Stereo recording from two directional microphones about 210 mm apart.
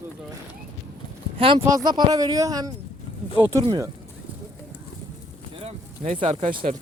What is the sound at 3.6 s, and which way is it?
Speech, 25° right (ahead or behind).